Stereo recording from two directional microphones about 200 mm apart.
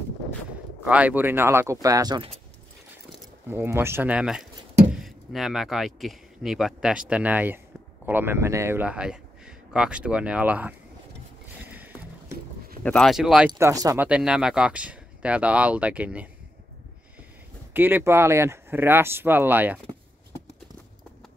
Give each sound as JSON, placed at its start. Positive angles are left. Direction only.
{"t": 0.8, "sound": "speech", "side_deg": -5}
{"t": 3.4, "sound": "speech", "side_deg": -10}
{"t": 11.6, "sound": "rowboat", "side_deg": -10}
{"t": 12.8, "sound": "speech", "side_deg": 5}
{"t": 13.5, "sound": "speech", "side_deg": -15}
{"t": 14.0, "sound": "speech", "side_deg": -5}
{"t": 17.7, "sound": "speech", "side_deg": -10}